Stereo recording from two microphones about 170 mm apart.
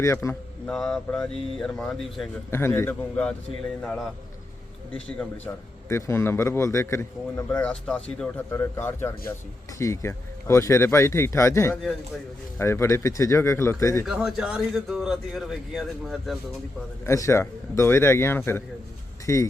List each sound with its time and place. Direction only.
0.0 s a man's voice: 15° left (ahead or behind)
0.7 s a man's voice: 5° left (ahead or behind)
2.5 s a man's voice: 15° left (ahead or behind)
7.7 s a man's voice: 5° left (ahead or behind)
14.0 s a man's voice: 5° right (ahead or behind)
17.1 s a man's voice: 15° left (ahead or behind)